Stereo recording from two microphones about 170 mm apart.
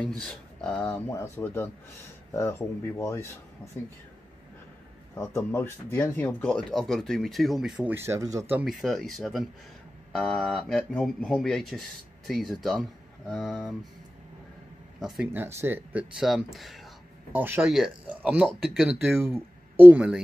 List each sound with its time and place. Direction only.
0.0 s speech: 5° left (ahead or behind)
0.8 s speech: 15° left (ahead or behind)
3.0 s speech: 15° left (ahead or behind)
5.1 s speech: 15° left (ahead or behind); by 7.9 s 5° right (ahead or behind)
7.9 s speech: 15° right (ahead or behind)
8.6 s speech: centre (ahead or behind)
15.0 s speech: centre (ahead or behind)
15.3 s speech: 15° right (ahead or behind)
19.0 s speech: 15° right (ahead or behind)